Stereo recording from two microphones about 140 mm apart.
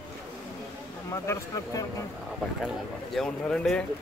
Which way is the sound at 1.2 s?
20° left (ahead or behind).